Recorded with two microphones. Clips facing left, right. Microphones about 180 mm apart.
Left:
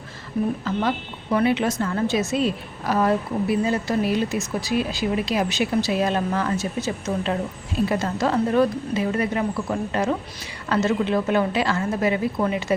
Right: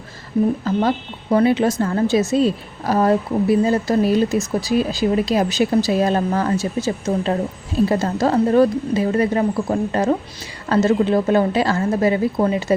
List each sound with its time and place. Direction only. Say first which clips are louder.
0.6 s speech: right 5 dB; 35° right (ahead or behind)